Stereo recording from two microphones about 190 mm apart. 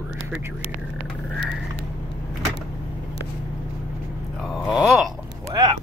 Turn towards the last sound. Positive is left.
turn(degrees=-20)  # may be behind; listen again after turning